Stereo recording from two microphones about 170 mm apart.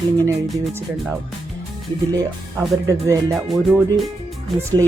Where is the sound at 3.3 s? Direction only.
Centre (ahead or behind).